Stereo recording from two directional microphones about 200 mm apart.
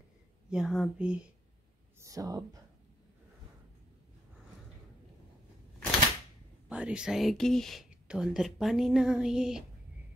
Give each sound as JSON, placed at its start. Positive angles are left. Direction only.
{"t": 0.5, "sound": "speech", "side_deg": 0}
{"t": 2.0, "sound": "speech", "side_deg": -15}
{"t": 6.7, "sound": "speech", "side_deg": -5}